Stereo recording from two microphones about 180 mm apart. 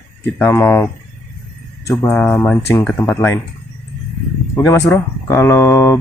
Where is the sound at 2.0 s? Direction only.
15° left (ahead or behind).